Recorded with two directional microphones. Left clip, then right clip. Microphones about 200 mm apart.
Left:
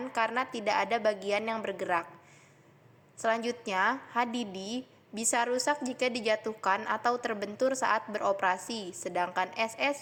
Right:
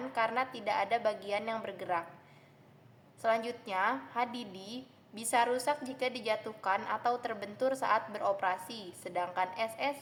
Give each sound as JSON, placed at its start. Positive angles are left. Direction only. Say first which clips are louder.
{"t": 0.1, "sound": "a woman's voice", "louder": "left 2 dB", "side_deg": 20}
{"t": 3.2, "sound": "a woman's voice", "louder": "left 2 dB", "side_deg": 20}